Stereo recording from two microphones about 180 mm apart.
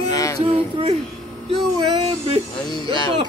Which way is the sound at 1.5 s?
30° right (ahead or behind).